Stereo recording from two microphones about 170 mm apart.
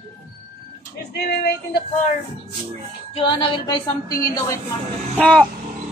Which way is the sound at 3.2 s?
30° left (ahead or behind).